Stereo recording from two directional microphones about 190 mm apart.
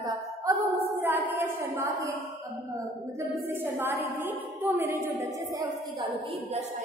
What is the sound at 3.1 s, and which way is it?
A woman's voice, 15° right (ahead or behind).